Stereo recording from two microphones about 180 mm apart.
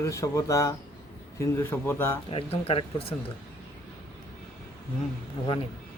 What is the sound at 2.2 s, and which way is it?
Speech, 35° left (ahead or behind).